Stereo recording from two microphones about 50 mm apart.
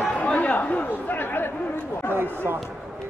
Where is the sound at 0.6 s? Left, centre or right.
Left.